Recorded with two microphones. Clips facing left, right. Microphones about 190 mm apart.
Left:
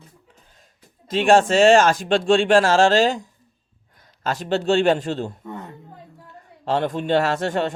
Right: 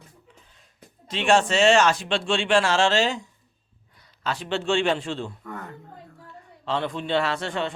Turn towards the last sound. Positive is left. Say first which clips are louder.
# left 5 dB
turn(degrees=45)  # may be behind; listen again after turning